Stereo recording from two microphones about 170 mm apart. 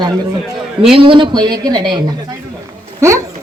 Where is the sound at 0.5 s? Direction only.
Centre (ahead or behind).